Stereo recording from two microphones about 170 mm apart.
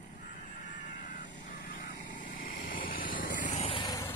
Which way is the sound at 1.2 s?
90° left.